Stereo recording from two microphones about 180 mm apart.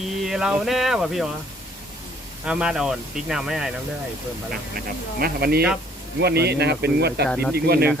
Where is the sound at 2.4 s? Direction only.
5° right (ahead or behind).